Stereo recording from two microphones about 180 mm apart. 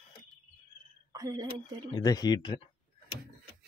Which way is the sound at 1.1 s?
20° right (ahead or behind).